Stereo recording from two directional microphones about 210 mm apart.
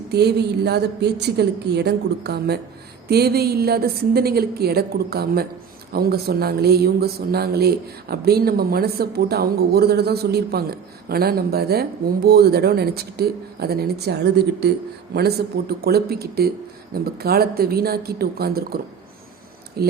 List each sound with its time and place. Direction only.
0.1 s speech: 50° right (ahead or behind)
15.8 s speech: 50° right (ahead or behind)